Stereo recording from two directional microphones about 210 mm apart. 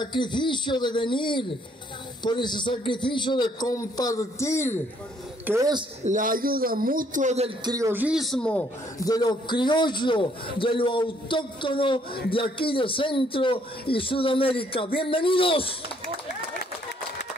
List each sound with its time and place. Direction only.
0.0 s a man's voice: 20° left (ahead or behind)
5.5 s speech: 15° right (ahead or behind)
6.0 s a man's voice: 40° right (ahead or behind)
7.7 s speech: 10° right (ahead or behind); by 8.6 s 5° left (ahead or behind)
9.0 s a man's voice: 20° left (ahead or behind)